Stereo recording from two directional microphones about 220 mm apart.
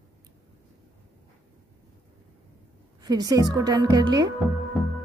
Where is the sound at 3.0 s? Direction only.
15° right (ahead or behind).